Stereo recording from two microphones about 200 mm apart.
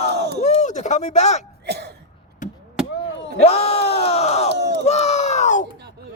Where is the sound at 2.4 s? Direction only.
40° left (ahead or behind).